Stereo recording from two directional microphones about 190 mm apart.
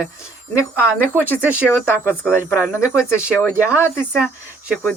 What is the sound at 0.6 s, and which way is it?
Speech, 10° left (ahead or behind).